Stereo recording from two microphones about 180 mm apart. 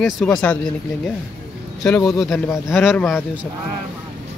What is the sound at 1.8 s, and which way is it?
Speech, 5° left (ahead or behind).